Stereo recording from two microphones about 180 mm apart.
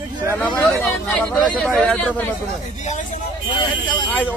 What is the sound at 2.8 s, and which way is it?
Speech, 40° left (ahead or behind).